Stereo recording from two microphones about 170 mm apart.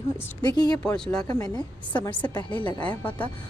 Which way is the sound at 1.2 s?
25° left (ahead or behind).